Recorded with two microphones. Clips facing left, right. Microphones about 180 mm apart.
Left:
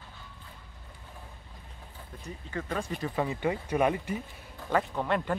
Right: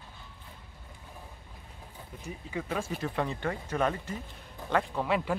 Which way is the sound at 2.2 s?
5° right (ahead or behind).